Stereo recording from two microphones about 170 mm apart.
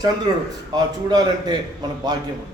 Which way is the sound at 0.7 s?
25° right (ahead or behind).